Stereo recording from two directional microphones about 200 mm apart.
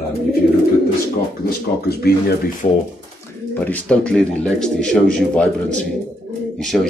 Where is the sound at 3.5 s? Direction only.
10° left (ahead or behind).